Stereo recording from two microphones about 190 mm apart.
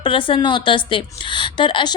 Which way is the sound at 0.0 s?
25° left (ahead or behind).